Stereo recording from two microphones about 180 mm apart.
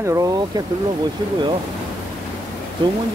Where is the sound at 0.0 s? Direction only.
20° right (ahead or behind).